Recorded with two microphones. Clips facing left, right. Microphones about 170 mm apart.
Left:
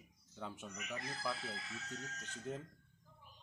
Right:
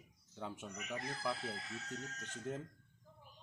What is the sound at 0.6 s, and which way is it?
Speech, 35° right (ahead or behind).